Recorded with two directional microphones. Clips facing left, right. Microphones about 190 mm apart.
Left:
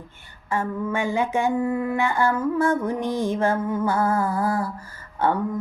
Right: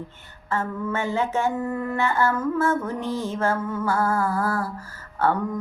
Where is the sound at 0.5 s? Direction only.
15° left (ahead or behind).